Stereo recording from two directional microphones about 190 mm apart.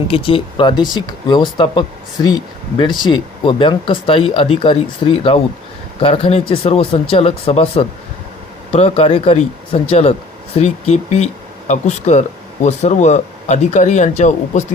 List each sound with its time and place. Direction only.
0.1 s speech: 30° left (ahead or behind)